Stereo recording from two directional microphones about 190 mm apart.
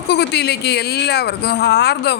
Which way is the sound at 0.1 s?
60° left (ahead or behind).